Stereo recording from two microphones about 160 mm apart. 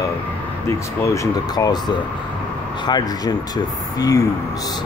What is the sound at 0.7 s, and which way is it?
Speech, 20° left (ahead or behind).